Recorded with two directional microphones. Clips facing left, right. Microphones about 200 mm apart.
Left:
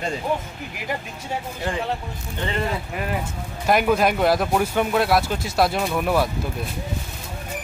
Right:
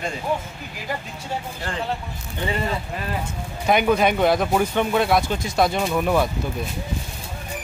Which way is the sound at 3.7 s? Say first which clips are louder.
Even; centre (ahead or behind).